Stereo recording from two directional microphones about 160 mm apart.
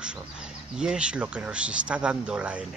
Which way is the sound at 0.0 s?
5° right (ahead or behind).